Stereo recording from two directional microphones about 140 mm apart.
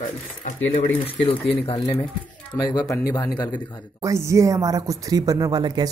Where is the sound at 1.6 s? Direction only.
40° left (ahead or behind).